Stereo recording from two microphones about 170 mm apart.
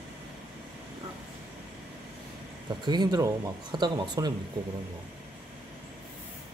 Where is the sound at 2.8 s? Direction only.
25° right (ahead or behind).